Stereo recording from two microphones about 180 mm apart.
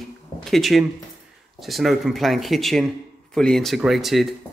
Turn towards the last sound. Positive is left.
turn(degrees=0)  # may be behind; listen again after turning